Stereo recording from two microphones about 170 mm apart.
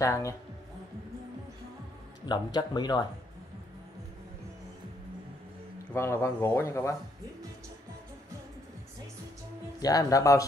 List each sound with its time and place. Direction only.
0.0 s speech: 15° left (ahead or behind)
2.2 s speech: 25° left (ahead or behind)
5.9 s speech: 15° left (ahead or behind)
9.8 s speech: 20° left (ahead or behind)